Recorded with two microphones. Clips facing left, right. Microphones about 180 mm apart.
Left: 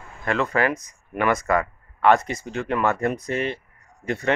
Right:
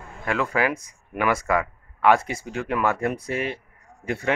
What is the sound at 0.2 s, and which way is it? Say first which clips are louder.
Speech: left 1 dB; 5° right (ahead or behind).